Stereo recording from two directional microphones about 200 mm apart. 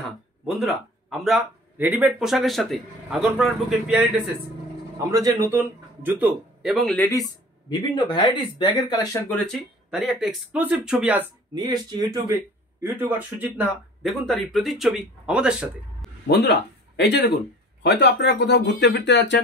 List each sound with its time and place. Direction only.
0.6 s speech: centre (ahead or behind)
4.9 s a man's voice: 15° right (ahead or behind); by 7.1 s centre (ahead or behind)
7.1 s speech: 20° left (ahead or behind)
9.5 s speech: centre (ahead or behind)
11.5 s speech: 20° right (ahead or behind)
12.8 s speech: 10° right (ahead or behind)
16.3 s speech: 55° left (ahead or behind)